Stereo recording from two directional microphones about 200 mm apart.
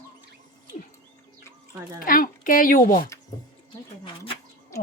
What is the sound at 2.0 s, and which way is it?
Speech, 45° left (ahead or behind).